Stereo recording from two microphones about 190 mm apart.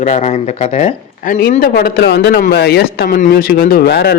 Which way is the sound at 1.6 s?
50° left (ahead or behind).